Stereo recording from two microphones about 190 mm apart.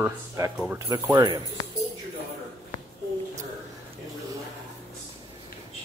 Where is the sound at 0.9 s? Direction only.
20° right (ahead or behind).